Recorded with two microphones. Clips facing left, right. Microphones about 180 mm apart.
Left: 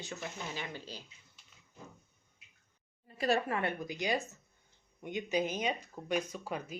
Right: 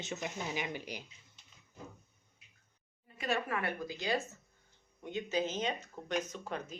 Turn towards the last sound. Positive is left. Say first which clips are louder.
# left 1 dB
turn(degrees=10)  # may be behind; listen again after turning